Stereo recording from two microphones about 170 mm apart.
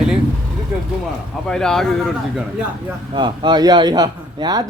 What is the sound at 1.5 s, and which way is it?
Speech, 5° left (ahead or behind).